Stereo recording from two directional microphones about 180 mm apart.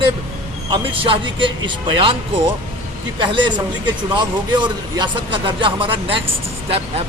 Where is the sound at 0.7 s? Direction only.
30° right (ahead or behind).